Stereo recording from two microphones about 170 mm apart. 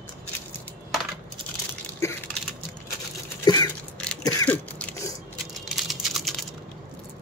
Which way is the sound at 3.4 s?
25° left (ahead or behind).